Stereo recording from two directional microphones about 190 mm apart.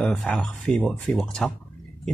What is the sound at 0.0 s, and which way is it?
Speech, 5° left (ahead or behind).